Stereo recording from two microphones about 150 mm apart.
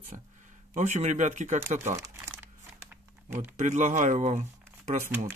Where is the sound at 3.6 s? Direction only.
55° right (ahead or behind).